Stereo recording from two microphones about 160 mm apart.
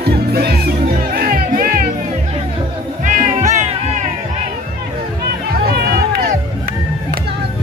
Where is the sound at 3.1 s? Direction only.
45° right (ahead or behind).